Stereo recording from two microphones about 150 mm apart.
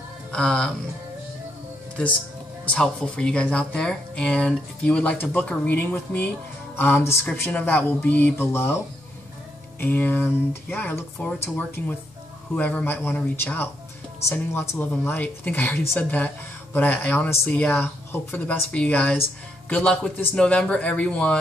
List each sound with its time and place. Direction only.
0.3 s speech: 5° left (ahead or behind)
2.6 s speech: 5° left (ahead or behind)
9.8 s speech: 10° left (ahead or behind)